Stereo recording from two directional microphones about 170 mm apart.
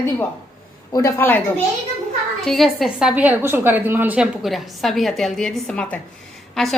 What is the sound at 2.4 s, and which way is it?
A child's voice, centre (ahead or behind).